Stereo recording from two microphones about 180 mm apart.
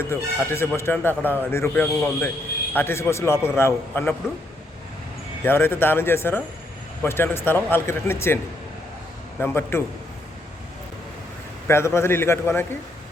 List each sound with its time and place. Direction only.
0.0 s a man's voice: 15° left (ahead or behind)
5.5 s a man's voice: 10° left (ahead or behind)
9.4 s a man's voice: 10° left (ahead or behind)
11.7 s a man's voice: 15° left (ahead or behind)